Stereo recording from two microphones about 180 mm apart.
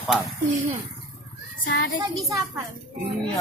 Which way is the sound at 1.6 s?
65° left (ahead or behind).